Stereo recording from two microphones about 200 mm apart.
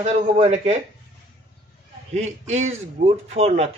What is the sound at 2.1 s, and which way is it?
A man's voice, 35° right (ahead or behind).